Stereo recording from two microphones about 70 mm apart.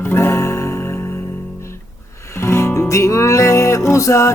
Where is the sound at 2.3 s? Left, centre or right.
Left.